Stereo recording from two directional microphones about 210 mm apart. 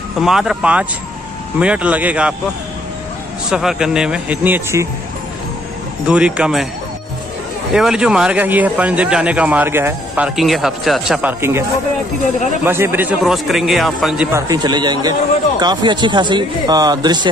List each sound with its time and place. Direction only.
0.2 s speech: centre (ahead or behind)
3.4 s speech: centre (ahead or behind)
6.0 s speech: 5° right (ahead or behind)
7.7 s speech: 5° right (ahead or behind)
12.6 s speech: 10° right (ahead or behind)
14.5 s speech: 20° right (ahead or behind)